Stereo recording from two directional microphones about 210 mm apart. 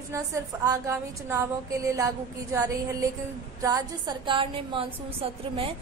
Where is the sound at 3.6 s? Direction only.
15° right (ahead or behind).